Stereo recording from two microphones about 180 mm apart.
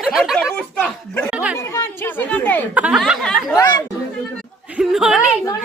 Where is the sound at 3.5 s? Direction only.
20° left (ahead or behind).